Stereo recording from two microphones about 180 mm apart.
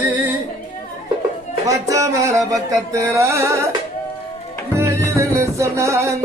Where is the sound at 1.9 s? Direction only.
15° right (ahead or behind).